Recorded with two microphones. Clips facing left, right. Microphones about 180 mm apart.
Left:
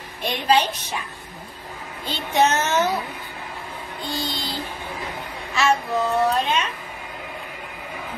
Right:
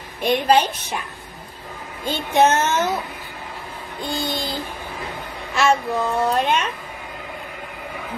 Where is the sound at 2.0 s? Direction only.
50° right (ahead or behind).